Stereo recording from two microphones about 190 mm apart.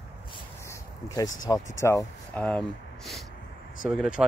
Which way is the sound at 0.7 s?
20° left (ahead or behind).